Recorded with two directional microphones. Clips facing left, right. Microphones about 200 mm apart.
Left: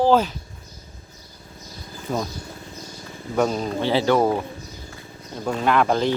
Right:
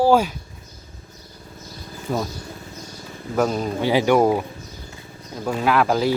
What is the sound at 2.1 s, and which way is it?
Speech, 5° right (ahead or behind).